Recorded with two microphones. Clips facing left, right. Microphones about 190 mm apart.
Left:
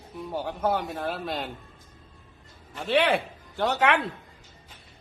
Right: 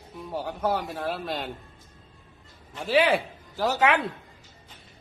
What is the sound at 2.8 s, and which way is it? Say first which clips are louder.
Speech: right 1 dB; 5° right (ahead or behind).